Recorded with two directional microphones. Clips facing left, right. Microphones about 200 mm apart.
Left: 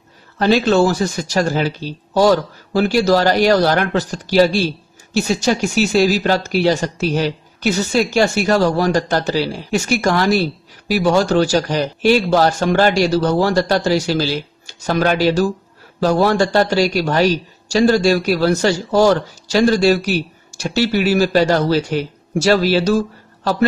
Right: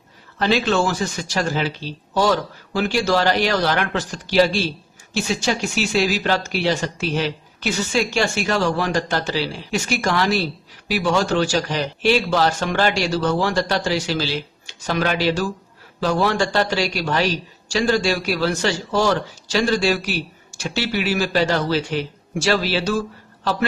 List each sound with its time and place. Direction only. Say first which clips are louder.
0.4 s speech: left 6 dB; 40° left (ahead or behind)